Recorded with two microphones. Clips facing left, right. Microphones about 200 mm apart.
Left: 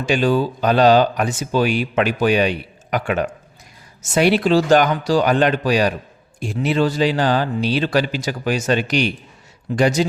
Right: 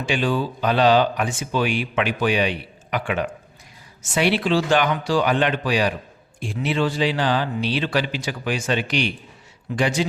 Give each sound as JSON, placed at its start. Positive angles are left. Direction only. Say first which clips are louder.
{"t": 0.0, "sound": "speech", "louder": "left 5 dB", "side_deg": 40}